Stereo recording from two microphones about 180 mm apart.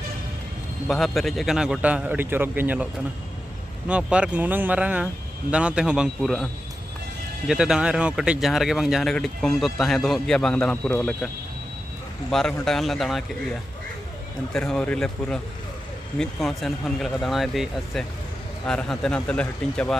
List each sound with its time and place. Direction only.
0.8 s a man's voice: centre (ahead or behind)
12.3 s speech: centre (ahead or behind)
14.5 s speech: 5° left (ahead or behind)